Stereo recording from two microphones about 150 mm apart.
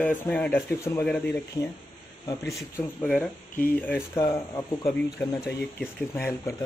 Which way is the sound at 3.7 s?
15° left (ahead or behind).